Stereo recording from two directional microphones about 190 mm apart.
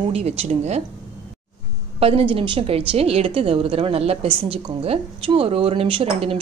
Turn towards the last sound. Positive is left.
turn(degrees=-30)  # may be behind; listen again after turning